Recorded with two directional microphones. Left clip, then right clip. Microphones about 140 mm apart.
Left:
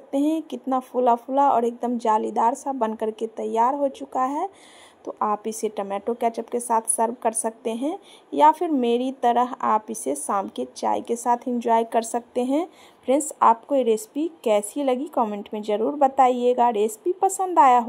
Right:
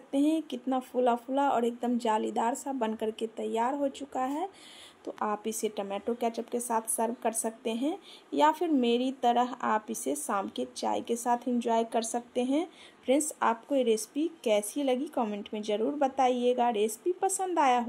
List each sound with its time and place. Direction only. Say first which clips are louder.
0.1 s speech: left 5 dB; 10° left (ahead or behind)
13.0 s speech: left 9 dB; 5° left (ahead or behind)